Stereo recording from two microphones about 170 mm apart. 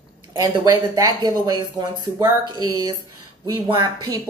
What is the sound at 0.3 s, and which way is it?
Speech, 20° right (ahead or behind).